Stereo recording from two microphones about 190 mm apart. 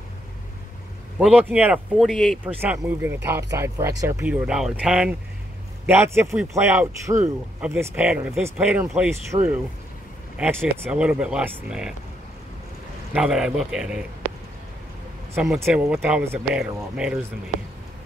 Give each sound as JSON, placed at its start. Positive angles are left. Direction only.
{"t": 1.1, "sound": "speech", "side_deg": -5}
{"t": 2.6, "sound": "speech", "side_deg": -10}
{"t": 9.3, "sound": "speech", "side_deg": -25}
{"t": 10.3, "sound": "speech", "side_deg": -10}
{"t": 13.1, "sound": "speech", "side_deg": -5}
{"t": 15.3, "sound": "speech", "side_deg": 0}